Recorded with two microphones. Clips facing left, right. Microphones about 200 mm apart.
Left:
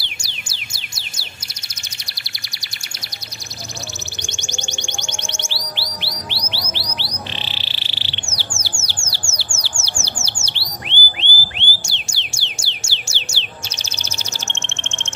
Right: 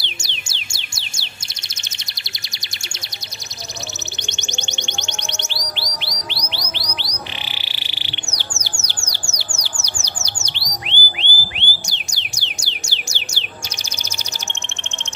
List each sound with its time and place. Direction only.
0.0 s music: 25° right (ahead or behind)
4.3 s music: 20° right (ahead or behind)
7.6 s bird: 15° right (ahead or behind)
9.2 s bird: 35° right (ahead or behind)
10.0 s a sound: 15° right (ahead or behind)